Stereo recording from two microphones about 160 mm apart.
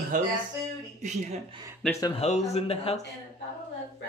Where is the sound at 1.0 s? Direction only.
45° right (ahead or behind).